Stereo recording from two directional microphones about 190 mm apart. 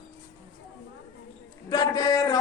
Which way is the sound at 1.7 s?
20° left (ahead or behind).